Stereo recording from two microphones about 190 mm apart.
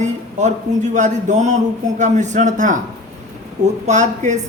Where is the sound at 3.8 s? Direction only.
40° right (ahead or behind).